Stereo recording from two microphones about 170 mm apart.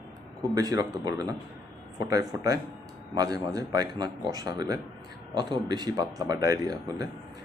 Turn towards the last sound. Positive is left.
turn(degrees=-20)  # may be behind; listen again after turning